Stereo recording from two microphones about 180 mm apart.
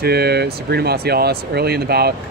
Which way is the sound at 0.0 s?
60° right (ahead or behind).